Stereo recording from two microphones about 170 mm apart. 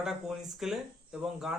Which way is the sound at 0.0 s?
Centre (ahead or behind).